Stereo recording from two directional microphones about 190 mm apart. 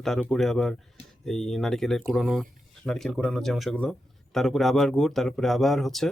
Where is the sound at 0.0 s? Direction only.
Centre (ahead or behind).